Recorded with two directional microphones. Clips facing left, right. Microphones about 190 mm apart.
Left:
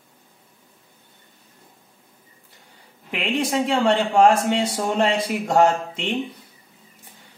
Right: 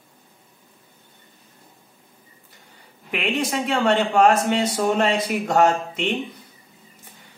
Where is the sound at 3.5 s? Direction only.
30° left (ahead or behind).